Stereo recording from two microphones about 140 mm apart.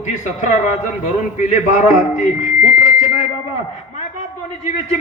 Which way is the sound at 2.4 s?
70° left (ahead or behind).